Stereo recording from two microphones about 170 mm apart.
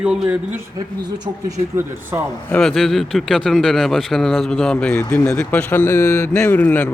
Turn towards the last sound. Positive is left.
turn(degrees=10)  # may be behind; listen again after turning